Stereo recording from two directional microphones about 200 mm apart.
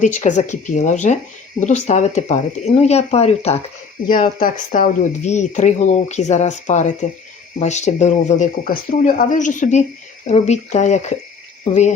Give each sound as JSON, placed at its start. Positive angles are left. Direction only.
{"t": 0.0, "sound": "speech", "side_deg": 40}
{"t": 4.1, "sound": "speech", "side_deg": 45}